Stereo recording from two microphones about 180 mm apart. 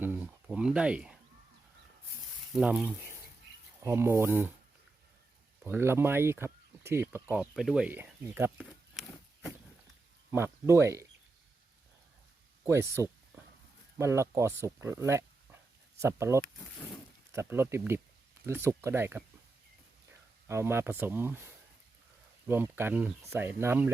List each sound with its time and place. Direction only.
0.0 s a sound: 10° right (ahead or behind)
2.6 s speech: 10° right (ahead or behind)
5.6 s speech: 15° right (ahead or behind)
7.5 s speech: centre (ahead or behind)
10.3 s speech: 15° right (ahead or behind)
12.6 s speech: 15° right (ahead or behind)
20.5 s speech: 15° right (ahead or behind)